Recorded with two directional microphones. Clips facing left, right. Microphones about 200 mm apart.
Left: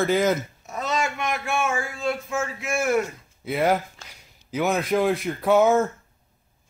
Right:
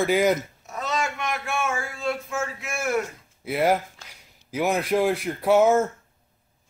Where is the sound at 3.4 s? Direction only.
5° right (ahead or behind).